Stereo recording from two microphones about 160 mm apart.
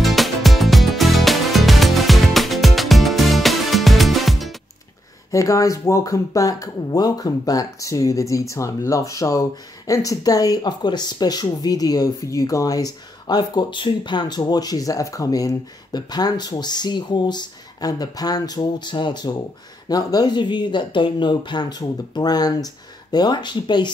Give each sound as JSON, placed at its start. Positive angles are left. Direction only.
{"t": 0.0, "sound": "music", "side_deg": 0}
{"t": 5.3, "sound": "speech", "side_deg": 20}